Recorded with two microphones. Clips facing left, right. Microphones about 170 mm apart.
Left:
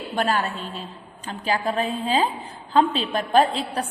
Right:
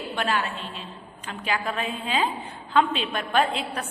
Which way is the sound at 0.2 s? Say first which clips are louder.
Left 4 dB; 40° left (ahead or behind).